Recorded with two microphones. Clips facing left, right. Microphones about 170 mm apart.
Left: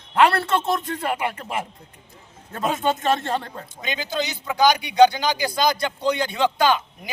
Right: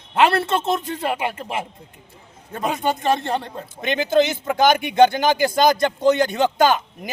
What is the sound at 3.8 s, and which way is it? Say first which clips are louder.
Speech: right 9 dB; 55° right (ahead or behind).